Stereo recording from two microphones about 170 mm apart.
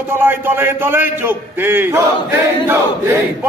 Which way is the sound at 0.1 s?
10° right (ahead or behind).